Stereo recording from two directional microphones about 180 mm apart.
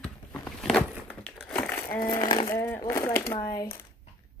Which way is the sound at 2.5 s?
10° left (ahead or behind).